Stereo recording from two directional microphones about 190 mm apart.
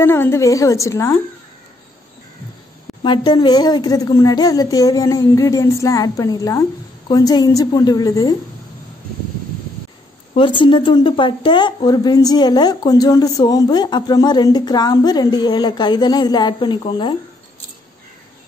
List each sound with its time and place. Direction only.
0.0 s a woman's voice: 10° left (ahead or behind)
3.0 s speech: 25° left (ahead or behind)
10.3 s speech: 25° left (ahead or behind)